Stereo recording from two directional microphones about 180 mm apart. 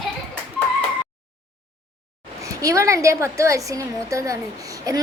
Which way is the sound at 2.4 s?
20° right (ahead or behind).